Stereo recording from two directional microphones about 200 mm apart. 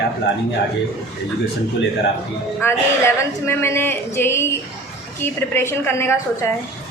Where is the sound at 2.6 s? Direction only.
10° left (ahead or behind).